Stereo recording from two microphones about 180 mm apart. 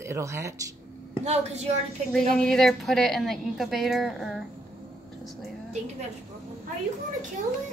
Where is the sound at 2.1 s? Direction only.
5° left (ahead or behind).